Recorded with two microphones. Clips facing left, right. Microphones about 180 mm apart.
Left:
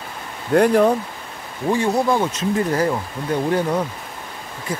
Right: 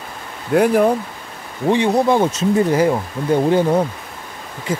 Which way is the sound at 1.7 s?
20° right (ahead or behind).